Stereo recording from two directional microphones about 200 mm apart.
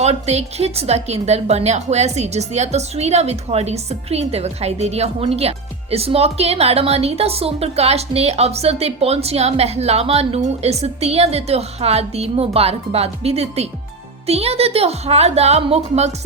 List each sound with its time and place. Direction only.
0.0 s a woman's voice: 35° right (ahead or behind)